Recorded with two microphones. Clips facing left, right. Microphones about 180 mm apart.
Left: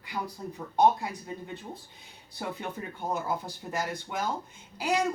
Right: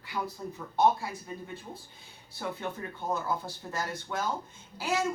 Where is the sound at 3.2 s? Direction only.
15° left (ahead or behind).